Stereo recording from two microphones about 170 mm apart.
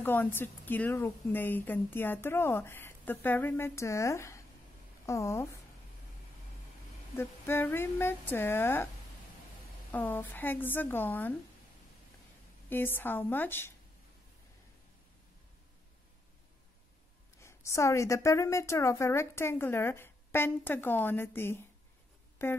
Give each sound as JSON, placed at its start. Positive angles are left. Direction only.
{"t": 0.0, "sound": "speech", "side_deg": 10}
{"t": 7.2, "sound": "speech", "side_deg": 15}
{"t": 9.8, "sound": "speech", "side_deg": 10}
{"t": 12.6, "sound": "speech", "side_deg": 10}
{"t": 17.4, "sound": "speech", "side_deg": 15}